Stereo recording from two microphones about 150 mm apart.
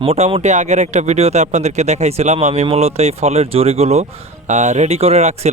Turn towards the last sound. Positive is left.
turn(degrees=-50)  # may be behind; listen again after turning